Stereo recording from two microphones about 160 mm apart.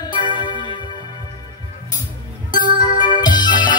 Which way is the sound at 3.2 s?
25° left (ahead or behind).